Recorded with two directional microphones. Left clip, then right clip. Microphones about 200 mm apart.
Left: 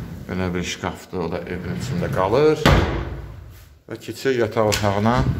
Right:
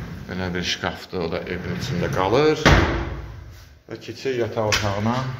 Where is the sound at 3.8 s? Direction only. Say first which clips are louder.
Left 4 dB; 20° left (ahead or behind); by 5.1 s 40° left (ahead or behind).